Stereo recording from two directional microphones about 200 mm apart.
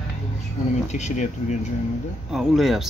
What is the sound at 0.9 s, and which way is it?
Speech, 35° left (ahead or behind).